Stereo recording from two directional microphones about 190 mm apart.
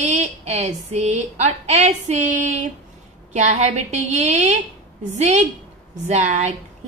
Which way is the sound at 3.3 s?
35° right (ahead or behind).